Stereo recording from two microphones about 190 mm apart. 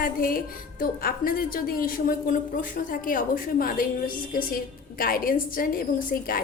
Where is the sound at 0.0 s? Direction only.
50° left (ahead or behind).